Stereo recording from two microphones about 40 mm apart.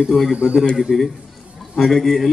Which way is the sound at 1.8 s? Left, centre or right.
Centre.